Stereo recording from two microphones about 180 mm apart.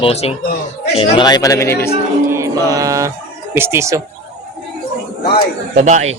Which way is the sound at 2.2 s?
15° right (ahead or behind).